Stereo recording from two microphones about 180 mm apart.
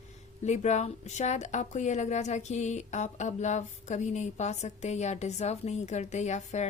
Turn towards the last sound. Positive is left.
turn(degrees=40)  # may be behind; listen again after turning